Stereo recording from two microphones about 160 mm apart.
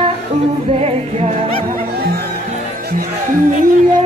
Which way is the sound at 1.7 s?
75° right (ahead or behind).